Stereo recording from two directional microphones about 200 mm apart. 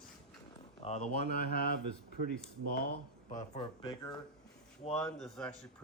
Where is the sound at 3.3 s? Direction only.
40° left (ahead or behind).